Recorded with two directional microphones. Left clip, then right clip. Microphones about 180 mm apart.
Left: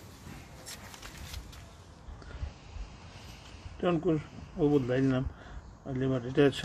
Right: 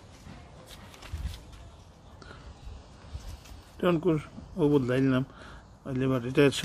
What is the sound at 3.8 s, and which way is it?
Speech, 45° right (ahead or behind).